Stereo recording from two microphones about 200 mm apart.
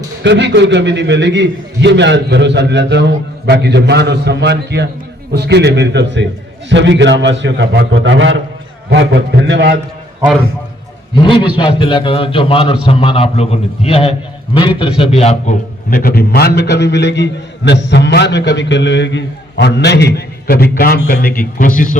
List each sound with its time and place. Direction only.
0.2 s a man's voice: 60° right (ahead or behind)
11.2 s a man's voice: 25° left (ahead or behind)
15.9 s a man's voice: 45° left (ahead or behind)